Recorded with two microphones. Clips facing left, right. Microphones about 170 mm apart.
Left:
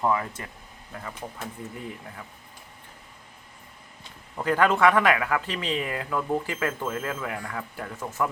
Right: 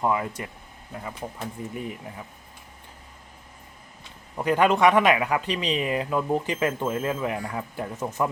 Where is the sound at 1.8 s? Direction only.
20° right (ahead or behind).